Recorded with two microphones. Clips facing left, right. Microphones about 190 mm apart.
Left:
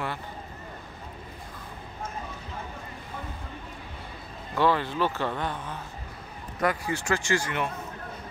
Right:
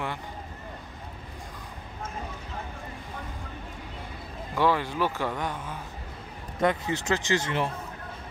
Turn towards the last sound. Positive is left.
turn(degrees=-30)  # may be behind; listen again after turning